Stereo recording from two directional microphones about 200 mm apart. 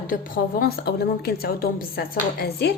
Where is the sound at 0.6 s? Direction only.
55° left (ahead or behind).